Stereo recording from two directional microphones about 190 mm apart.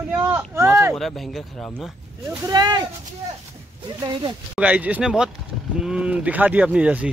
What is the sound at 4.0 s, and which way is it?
Speech, 25° right (ahead or behind).